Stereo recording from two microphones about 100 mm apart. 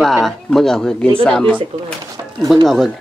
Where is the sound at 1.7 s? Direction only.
85° right.